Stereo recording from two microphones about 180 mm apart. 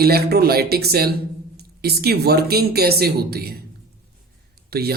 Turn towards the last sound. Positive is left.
turn(degrees=-60)  # may be behind; listen again after turning